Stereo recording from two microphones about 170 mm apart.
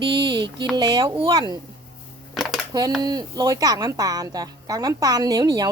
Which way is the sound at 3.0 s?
25° right (ahead or behind).